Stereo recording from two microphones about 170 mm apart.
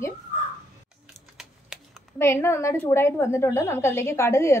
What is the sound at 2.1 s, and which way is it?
A woman's voice, 15° left (ahead or behind).